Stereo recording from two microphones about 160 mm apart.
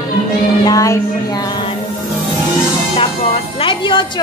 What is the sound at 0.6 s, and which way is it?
A woman's voice, 20° left (ahead or behind).